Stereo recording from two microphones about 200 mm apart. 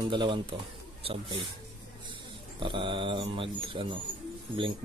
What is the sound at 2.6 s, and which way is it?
Speech, 25° right (ahead or behind).